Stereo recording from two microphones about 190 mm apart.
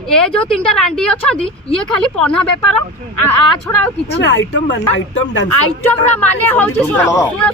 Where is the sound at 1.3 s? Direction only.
30° left (ahead or behind).